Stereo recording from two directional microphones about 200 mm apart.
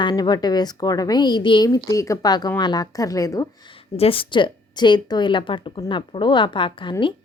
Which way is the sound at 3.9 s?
30° left (ahead or behind).